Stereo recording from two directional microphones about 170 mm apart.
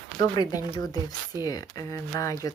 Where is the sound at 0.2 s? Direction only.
25° left (ahead or behind).